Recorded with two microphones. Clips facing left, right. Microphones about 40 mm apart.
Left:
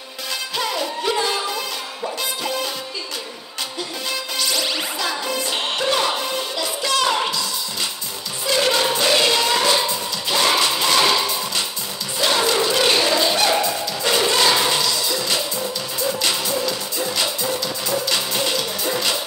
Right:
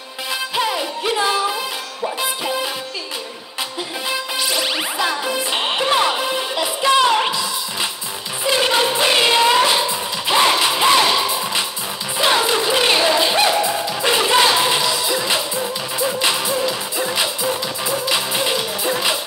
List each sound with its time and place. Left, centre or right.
0.6 s music: centre
4.1 s music: centre
8.5 s music: right
12.4 s a sound: centre
13.5 s music: right